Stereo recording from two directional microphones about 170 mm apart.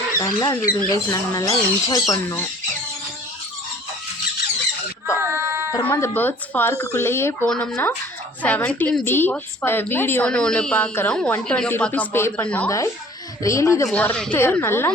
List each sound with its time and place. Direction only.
0.2 s speech: 20° left (ahead or behind)
5.2 s a sound: 15° right (ahead or behind)
5.7 s a woman's voice: 15° left (ahead or behind)
13.8 s a woman's voice: 5° left (ahead or behind)